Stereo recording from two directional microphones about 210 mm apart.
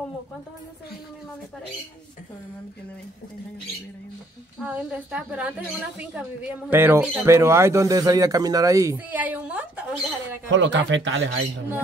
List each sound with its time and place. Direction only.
4.6 s a woman's voice: 5° right (ahead or behind)
10.5 s speech: 60° right (ahead or behind)